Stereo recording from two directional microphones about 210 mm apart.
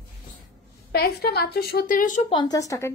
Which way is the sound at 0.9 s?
50° left (ahead or behind).